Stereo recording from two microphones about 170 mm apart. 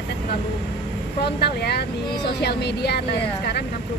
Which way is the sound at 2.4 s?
75° left (ahead or behind).